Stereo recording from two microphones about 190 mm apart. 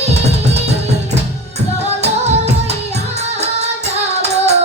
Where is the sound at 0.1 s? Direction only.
35° right (ahead or behind).